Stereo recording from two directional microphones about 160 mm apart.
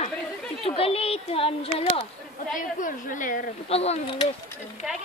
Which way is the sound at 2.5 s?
55° left (ahead or behind).